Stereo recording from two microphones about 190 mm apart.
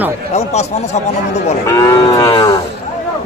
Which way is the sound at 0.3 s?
35° left (ahead or behind).